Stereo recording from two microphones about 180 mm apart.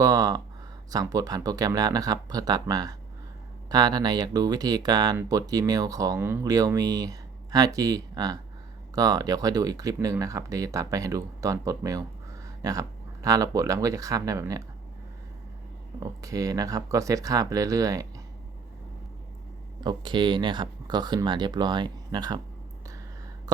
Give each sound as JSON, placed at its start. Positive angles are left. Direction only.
{"t": 0.0, "sound": "speech", "side_deg": -20}
{"t": 16.2, "sound": "speech", "side_deg": -20}
{"t": 19.8, "sound": "speech", "side_deg": -25}